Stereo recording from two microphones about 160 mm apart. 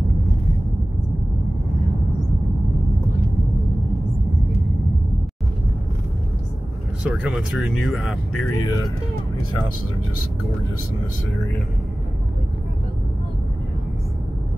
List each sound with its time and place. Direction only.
7.1 s speech: 5° right (ahead or behind)
8.5 s speech: 20° left (ahead or behind)